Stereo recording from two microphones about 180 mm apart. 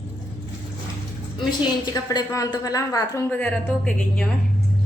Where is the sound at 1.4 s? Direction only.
20° left (ahead or behind).